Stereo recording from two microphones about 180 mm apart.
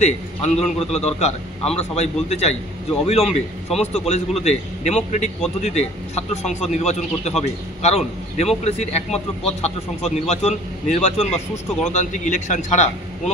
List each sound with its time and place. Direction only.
0.0 s a man's voice: 35° left (ahead or behind)